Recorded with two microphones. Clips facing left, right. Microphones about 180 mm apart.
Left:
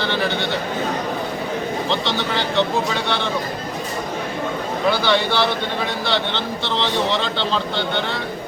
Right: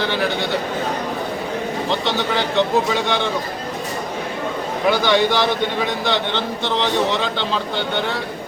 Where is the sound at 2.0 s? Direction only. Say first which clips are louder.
Right 2 dB; 10° right (ahead or behind).